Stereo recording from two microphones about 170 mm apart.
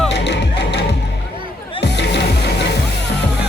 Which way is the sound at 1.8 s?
80° left.